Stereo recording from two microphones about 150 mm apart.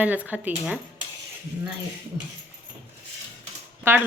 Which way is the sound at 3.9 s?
15° right (ahead or behind).